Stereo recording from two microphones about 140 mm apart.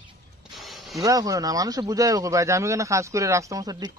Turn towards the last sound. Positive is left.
turn(degrees=-25)  # may be behind; listen again after turning